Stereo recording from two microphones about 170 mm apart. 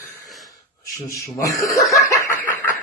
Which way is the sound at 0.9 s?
20° left (ahead or behind).